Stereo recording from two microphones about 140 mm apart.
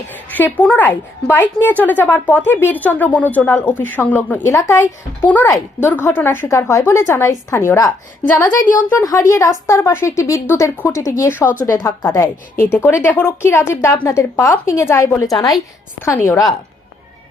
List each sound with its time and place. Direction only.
0.1 s a woman's voice: 15° left (ahead or behind)